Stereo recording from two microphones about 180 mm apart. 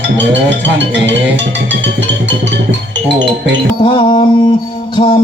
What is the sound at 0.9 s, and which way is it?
Speech, 80° right.